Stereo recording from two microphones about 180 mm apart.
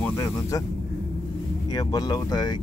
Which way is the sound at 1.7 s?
20° left (ahead or behind).